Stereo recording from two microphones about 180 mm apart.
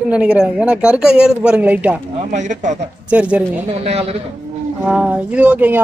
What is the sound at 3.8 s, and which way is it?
Speech, 35° right (ahead or behind).